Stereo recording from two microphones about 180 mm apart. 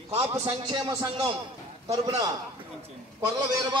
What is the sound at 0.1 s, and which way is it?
A man's voice, 30° right (ahead or behind).